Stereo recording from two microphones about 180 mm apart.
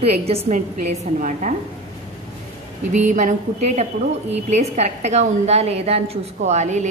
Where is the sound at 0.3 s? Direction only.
40° right (ahead or behind).